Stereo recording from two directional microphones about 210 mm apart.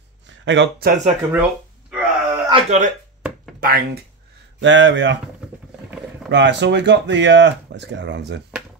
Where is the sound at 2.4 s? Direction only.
25° right (ahead or behind).